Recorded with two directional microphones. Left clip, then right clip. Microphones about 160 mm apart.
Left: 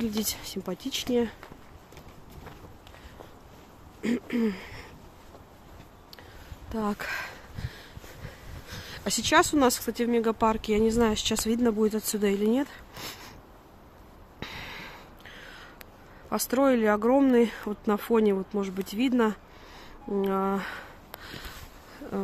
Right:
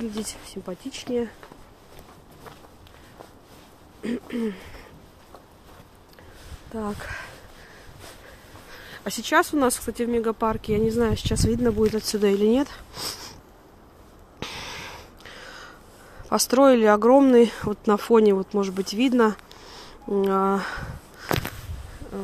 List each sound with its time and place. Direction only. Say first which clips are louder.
0.0 s speech: left 1 dB; 25° left (ahead or behind)
4.0 s speech: even; 30° left (ahead or behind)
6.7 s sniff: left 1 dB; 25° left (ahead or behind)
8.6 s speech: even; 15° left (ahead or behind)
12.2 s speech: right 6 dB; centre (ahead or behind)
14.4 s a sound: right 5 dB; centre (ahead or behind)
16.3 s speech: right 7 dB; 5° right (ahead or behind)